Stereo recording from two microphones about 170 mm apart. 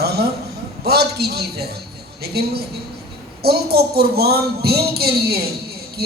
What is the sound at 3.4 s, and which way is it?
A woman's voice, 70° right (ahead or behind).